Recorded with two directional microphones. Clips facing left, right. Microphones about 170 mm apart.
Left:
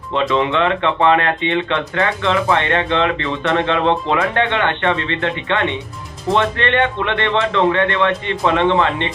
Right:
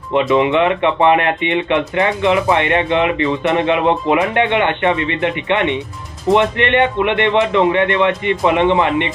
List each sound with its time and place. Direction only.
0.1 s speech: 15° right (ahead or behind)